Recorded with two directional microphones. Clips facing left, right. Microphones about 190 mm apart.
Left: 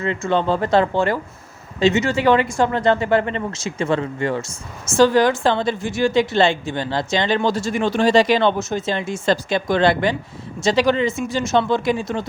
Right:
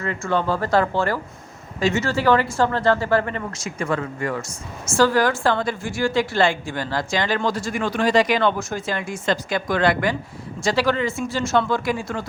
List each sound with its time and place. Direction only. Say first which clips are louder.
0.0 s a woman's voice: left 3 dB; 20° left (ahead or behind)